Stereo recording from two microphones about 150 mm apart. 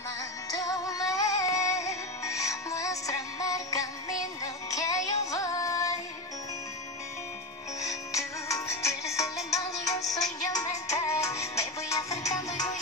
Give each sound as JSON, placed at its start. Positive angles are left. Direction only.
{"t": 0.6, "sound": "music", "side_deg": 25}
{"t": 7.8, "sound": "music", "side_deg": 20}